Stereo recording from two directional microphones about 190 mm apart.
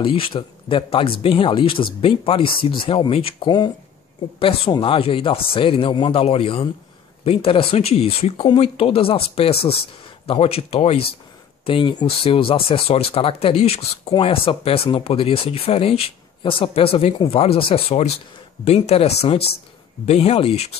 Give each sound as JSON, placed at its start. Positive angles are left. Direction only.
{"t": 0.0, "sound": "speech", "side_deg": 30}